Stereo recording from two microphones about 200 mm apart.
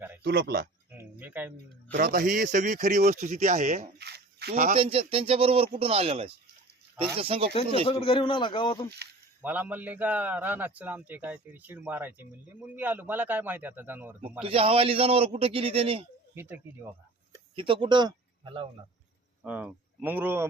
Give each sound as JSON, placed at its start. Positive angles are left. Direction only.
{"t": 0.2, "sound": "speech", "side_deg": -55}
{"t": 0.9, "sound": "a sound", "side_deg": -10}
{"t": 1.9, "sound": "speech", "side_deg": -45}
{"t": 3.9, "sound": "a sound", "side_deg": -55}
{"t": 4.8, "sound": "a man's voice", "side_deg": -30}
{"t": 7.9, "sound": "a man's voice", "side_deg": 25}
{"t": 9.4, "sound": "a man's voice", "side_deg": -10}
{"t": 14.4, "sound": "a man's voice", "side_deg": -30}
{"t": 16.3, "sound": "a man's voice", "side_deg": -10}
{"t": 17.5, "sound": "speech", "side_deg": -25}
{"t": 19.4, "sound": "speech", "side_deg": -5}